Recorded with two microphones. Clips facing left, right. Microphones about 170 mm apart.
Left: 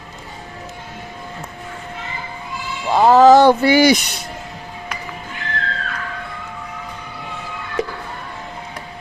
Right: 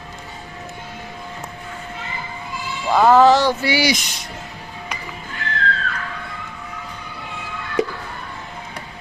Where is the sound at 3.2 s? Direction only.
50° left (ahead or behind).